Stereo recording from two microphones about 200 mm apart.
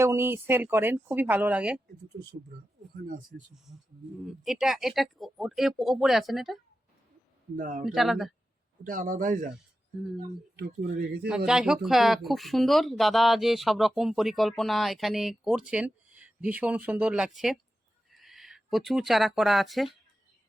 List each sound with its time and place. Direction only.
0.0 s speech: 10° right (ahead or behind)
2.9 s speech: 45° right (ahead or behind)
4.3 s speech: centre (ahead or behind)
7.5 s a man's voice: 40° right (ahead or behind)
7.9 s speech: centre (ahead or behind)
8.8 s a man's voice: 40° right (ahead or behind)
10.8 s speech: 55° right (ahead or behind)
11.3 s speech: 5° right (ahead or behind)